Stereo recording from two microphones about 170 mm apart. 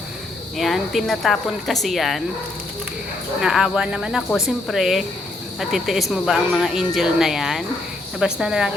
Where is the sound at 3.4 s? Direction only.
5° right (ahead or behind).